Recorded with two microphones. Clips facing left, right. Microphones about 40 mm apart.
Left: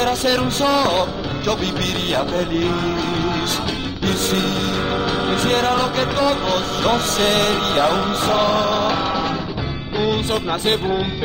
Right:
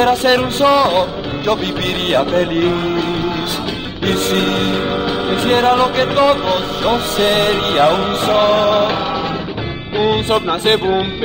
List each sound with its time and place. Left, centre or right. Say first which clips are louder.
0.0 s music: right 5 dB; right
0.7 s music: right 4 dB; centre
2.1 s music: right 7 dB; right
4.1 s music: right 5 dB; right
5.3 s music: right 6 dB; right
6.4 s music: right 3 dB; centre
7.7 s music: right 4 dB; right
9.9 s music: right 5 dB; right